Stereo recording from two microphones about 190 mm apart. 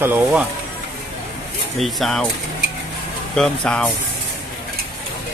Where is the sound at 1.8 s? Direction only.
Centre (ahead or behind).